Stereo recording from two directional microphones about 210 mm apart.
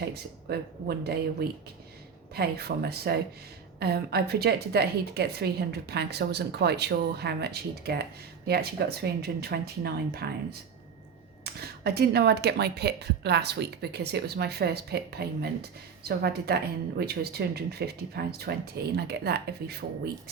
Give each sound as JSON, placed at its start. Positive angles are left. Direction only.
{"t": 0.0, "sound": "a woman's voice", "side_deg": -50}